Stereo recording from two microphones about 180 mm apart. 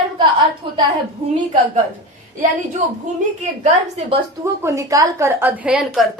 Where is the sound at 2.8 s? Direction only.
45° right (ahead or behind).